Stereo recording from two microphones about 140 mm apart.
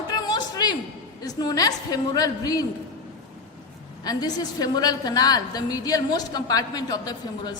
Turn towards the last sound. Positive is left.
turn(degrees=30)  # may be behind; listen again after turning